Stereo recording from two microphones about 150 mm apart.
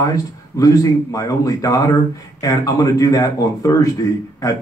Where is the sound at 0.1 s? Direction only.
25° left (ahead or behind).